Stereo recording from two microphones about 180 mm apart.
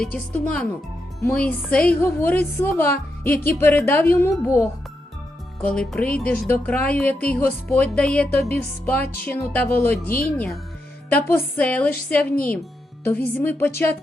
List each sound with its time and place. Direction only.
0.0 s a woman's voice: 5° left (ahead or behind)